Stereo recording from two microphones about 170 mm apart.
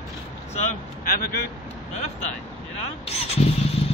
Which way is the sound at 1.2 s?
70° left (ahead or behind).